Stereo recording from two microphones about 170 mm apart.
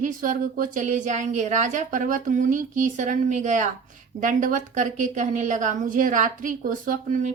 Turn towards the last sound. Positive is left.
turn(degrees=-50)  # may be behind; listen again after turning